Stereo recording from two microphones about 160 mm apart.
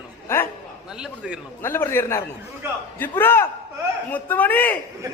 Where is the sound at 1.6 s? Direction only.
15° left (ahead or behind).